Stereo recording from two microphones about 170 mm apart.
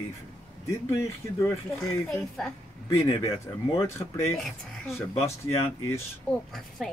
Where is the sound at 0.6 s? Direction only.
15° left (ahead or behind).